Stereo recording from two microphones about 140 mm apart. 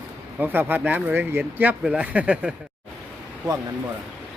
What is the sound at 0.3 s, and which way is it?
Speech, 15° right (ahead or behind).